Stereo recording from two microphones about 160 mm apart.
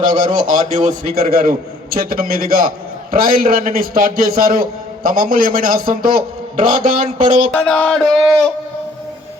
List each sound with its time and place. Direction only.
0.1 s a man's voice: 30° right (ahead or behind)
0.3 s a man's voice: 55° right (ahead or behind)
7.0 s speech: 40° right (ahead or behind)
7.5 s a sound: 5° left (ahead or behind)